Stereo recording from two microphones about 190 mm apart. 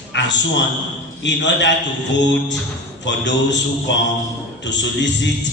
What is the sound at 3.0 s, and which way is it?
A man's voice, 70° left (ahead or behind).